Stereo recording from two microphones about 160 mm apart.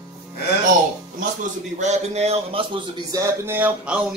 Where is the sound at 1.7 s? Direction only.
45° right (ahead or behind).